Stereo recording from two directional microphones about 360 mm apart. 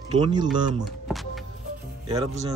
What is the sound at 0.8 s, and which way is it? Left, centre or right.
Speech, centre.